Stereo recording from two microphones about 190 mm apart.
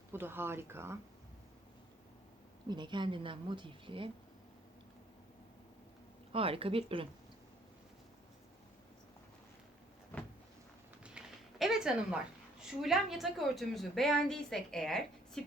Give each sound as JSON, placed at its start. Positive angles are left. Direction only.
{"t": 0.1, "sound": "speech", "side_deg": -10}
{"t": 2.6, "sound": "speech", "side_deg": -25}
{"t": 6.3, "sound": "speech", "side_deg": -30}
{"t": 11.0, "sound": "a sound", "side_deg": -5}
{"t": 12.8, "sound": "a woman's voice", "side_deg": 0}